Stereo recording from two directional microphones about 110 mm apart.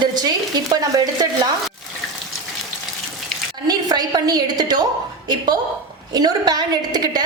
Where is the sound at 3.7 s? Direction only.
40° right (ahead or behind).